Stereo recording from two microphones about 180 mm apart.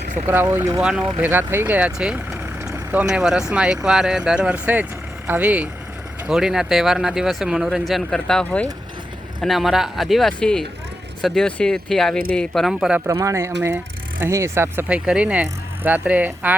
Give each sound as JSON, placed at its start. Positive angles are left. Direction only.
{"t": 0.3, "sound": "speech", "side_deg": -10}
{"t": 0.8, "sound": "speech", "side_deg": -5}
{"t": 13.1, "sound": "speech", "side_deg": -15}